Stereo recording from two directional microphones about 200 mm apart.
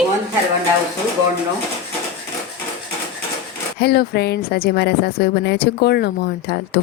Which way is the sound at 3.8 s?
55° left (ahead or behind).